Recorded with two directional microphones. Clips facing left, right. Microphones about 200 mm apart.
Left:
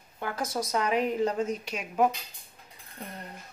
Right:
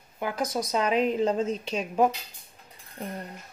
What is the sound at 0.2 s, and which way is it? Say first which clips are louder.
A woman's voice: right 3 dB; 15° right (ahead or behind).